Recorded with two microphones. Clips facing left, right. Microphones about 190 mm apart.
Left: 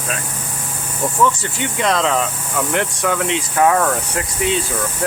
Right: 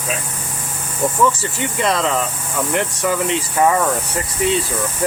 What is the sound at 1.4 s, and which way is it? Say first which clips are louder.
Speech: even; centre (ahead or behind).